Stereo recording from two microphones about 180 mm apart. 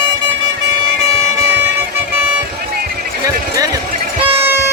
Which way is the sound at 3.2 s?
20° right (ahead or behind).